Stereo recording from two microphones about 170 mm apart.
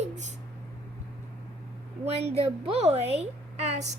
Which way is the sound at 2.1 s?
35° right (ahead or behind).